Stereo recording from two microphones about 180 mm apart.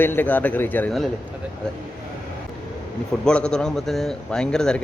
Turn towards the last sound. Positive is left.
turn(degrees=5)  # may be behind; listen again after turning